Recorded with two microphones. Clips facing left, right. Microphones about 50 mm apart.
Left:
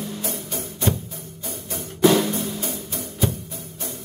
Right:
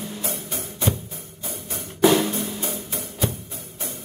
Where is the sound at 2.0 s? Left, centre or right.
Centre.